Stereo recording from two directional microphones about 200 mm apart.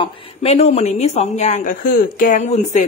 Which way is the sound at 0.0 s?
30° left (ahead or behind).